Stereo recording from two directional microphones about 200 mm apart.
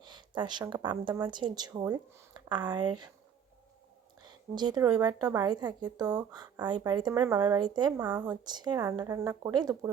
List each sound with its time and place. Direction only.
0.0 s a woman's voice: 20° right (ahead or behind)
4.2 s a woman's voice: 20° right (ahead or behind)
8.4 s speech: 20° right (ahead or behind)